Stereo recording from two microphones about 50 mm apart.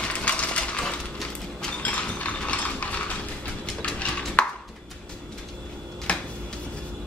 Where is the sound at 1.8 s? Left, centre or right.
Left.